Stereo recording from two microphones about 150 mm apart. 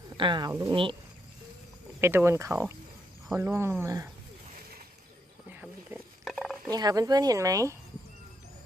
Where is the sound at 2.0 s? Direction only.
15° right (ahead or behind).